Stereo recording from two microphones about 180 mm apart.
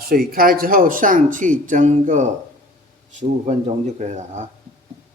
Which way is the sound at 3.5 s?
40° right (ahead or behind).